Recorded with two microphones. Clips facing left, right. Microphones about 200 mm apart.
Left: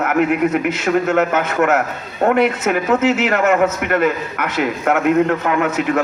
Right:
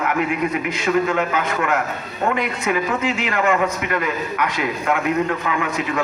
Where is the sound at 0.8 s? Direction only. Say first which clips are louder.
Left 2 dB; 70° left (ahead or behind).